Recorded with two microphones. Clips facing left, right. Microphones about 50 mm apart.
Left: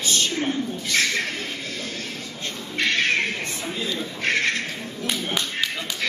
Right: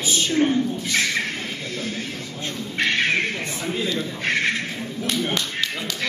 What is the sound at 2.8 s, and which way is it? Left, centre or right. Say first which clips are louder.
Bird: right 1 dB; centre.